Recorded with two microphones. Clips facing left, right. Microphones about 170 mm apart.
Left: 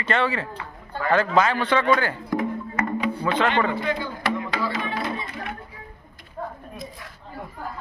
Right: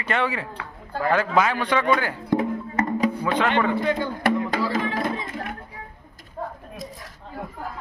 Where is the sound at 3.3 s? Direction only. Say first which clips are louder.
Even; 5° right (ahead or behind).